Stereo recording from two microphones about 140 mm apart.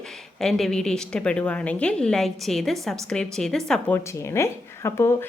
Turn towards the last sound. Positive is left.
turn(degrees=20)  # may be behind; listen again after turning